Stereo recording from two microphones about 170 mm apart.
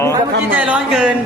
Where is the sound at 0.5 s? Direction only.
5° right (ahead or behind).